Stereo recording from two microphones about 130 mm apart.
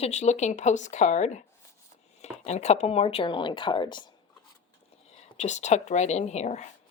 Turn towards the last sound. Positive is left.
turn(degrees=60)  # may be behind; listen again after turning